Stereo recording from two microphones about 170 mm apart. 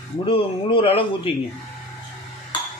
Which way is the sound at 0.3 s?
30° left (ahead or behind).